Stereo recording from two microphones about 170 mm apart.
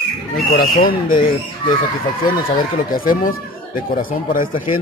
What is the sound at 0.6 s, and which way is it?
Speech, 60° left (ahead or behind).